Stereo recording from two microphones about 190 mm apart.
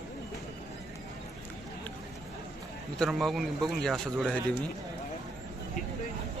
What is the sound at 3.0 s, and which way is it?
A man's voice, centre (ahead or behind).